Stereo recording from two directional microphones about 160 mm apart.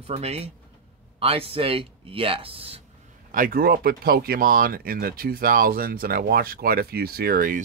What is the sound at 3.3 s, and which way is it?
Speech, 60° right (ahead or behind).